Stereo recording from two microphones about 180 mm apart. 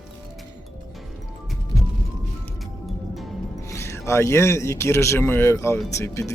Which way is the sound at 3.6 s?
15° left (ahead or behind).